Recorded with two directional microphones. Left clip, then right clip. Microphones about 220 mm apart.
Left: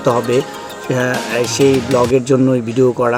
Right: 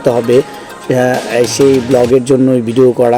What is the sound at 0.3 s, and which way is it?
Speech, 5° right (ahead or behind).